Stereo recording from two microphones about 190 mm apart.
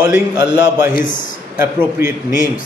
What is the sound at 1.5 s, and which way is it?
Speech, 15° right (ahead or behind).